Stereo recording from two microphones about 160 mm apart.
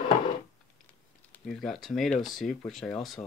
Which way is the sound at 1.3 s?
Centre (ahead or behind).